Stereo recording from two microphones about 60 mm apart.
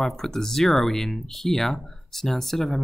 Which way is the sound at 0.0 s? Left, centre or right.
Centre.